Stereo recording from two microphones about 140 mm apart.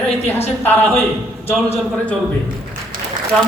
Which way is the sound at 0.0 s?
15° left (ahead or behind).